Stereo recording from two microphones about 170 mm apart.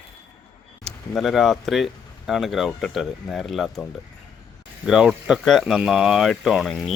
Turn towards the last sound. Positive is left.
turn(degrees=0)  # may be behind; listen again after turning